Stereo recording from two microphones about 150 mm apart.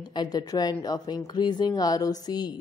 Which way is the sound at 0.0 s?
30° left (ahead or behind).